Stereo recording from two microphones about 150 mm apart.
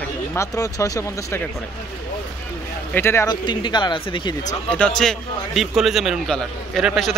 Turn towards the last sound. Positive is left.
turn(degrees=0)  # may be behind; listen again after turning